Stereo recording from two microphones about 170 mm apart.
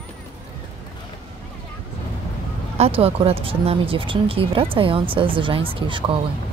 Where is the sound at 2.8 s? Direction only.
35° right (ahead or behind).